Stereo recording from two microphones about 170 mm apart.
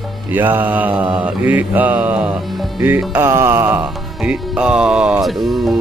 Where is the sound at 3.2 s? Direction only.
15° right (ahead or behind).